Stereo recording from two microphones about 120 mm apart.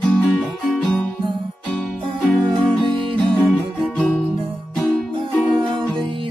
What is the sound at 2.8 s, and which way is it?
Music, 45° right (ahead or behind).